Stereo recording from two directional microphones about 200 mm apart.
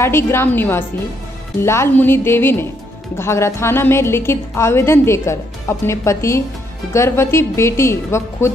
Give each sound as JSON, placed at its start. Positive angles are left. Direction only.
{"t": 0.0, "sound": "a woman's voice", "side_deg": 10}